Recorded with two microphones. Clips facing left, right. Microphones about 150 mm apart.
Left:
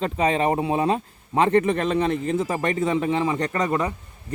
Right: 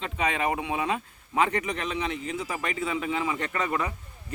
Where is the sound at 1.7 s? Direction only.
45° left (ahead or behind).